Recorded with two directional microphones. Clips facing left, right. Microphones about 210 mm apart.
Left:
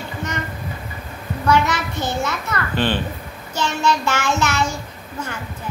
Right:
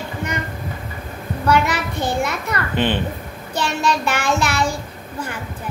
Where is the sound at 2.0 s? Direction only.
15° right (ahead or behind).